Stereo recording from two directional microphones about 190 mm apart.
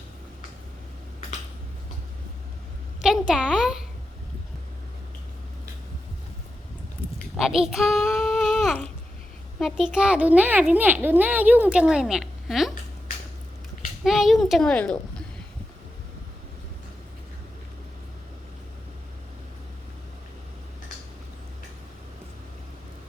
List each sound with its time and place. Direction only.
3.0 s a sound: 5° right (ahead or behind)
7.3 s a child's voice: 5° right (ahead or behind)
14.0 s a woman's voice: centre (ahead or behind)